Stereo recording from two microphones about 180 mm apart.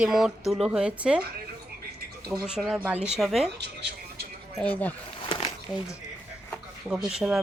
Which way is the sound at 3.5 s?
70° right (ahead or behind).